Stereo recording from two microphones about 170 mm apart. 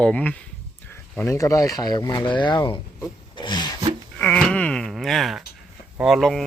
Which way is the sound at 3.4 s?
25° left (ahead or behind).